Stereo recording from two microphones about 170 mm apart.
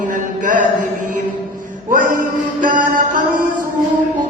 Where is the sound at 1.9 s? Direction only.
50° right (ahead or behind).